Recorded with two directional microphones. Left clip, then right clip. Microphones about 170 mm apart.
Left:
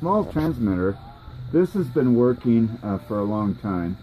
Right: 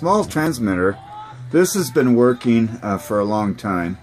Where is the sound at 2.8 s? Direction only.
20° right (ahead or behind).